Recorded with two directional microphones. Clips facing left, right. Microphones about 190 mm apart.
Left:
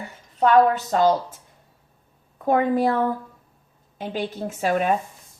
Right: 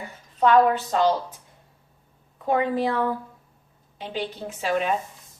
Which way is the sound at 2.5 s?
50° left (ahead or behind).